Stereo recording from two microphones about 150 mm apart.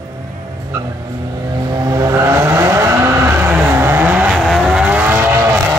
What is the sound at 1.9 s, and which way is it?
Vehicle, 20° right (ahead or behind).